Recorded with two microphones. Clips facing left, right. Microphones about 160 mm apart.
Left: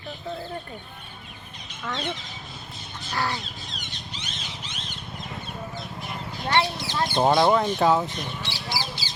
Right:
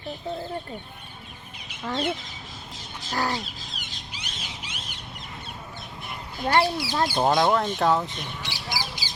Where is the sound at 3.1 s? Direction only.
40° right (ahead or behind).